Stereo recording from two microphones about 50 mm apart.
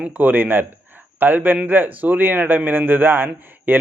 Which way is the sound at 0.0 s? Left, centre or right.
Right.